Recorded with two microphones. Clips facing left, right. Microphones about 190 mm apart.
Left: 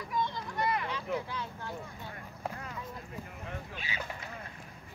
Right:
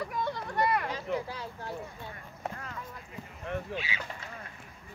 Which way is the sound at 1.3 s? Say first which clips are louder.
Right 1 dB; 35° right (ahead or behind).